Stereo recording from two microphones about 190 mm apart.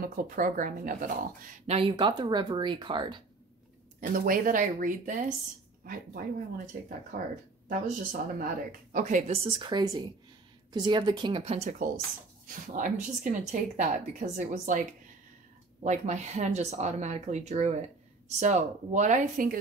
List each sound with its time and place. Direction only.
0.0 s speech: 50° right (ahead or behind)
1.8 s speech: 25° right (ahead or behind)
4.0 s speech: 45° right (ahead or behind)
12.4 s speech: 45° right (ahead or behind)
15.8 s speech: 40° right (ahead or behind)